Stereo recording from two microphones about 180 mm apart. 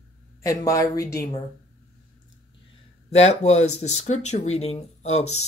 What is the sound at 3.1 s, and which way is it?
Speech, 35° left (ahead or behind).